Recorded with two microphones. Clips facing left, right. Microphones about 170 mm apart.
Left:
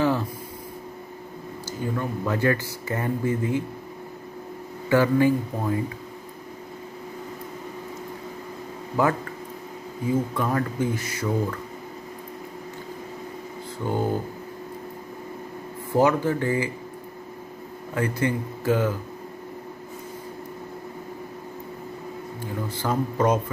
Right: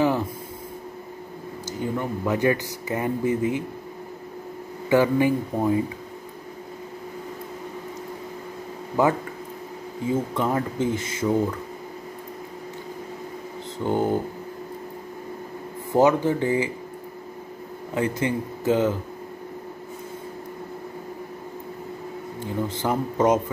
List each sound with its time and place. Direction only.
0.0 s a sound: 15° right (ahead or behind)
1.7 s speech: 20° right (ahead or behind)
4.8 s speech: 15° right (ahead or behind)
9.0 s speech: 20° right (ahead or behind)
10.3 s speech: 20° right (ahead or behind)
13.8 s speech: 20° right (ahead or behind)
15.9 s speech: 20° right (ahead or behind)
17.9 s speech: 20° right (ahead or behind)
22.7 s speech: 20° right (ahead or behind)